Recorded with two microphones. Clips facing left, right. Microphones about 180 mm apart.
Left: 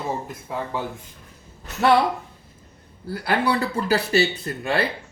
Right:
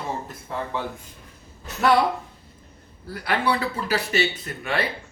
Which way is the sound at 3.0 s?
30° left (ahead or behind).